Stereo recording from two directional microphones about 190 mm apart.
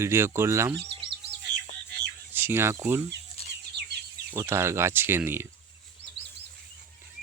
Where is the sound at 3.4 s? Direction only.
30° left (ahead or behind).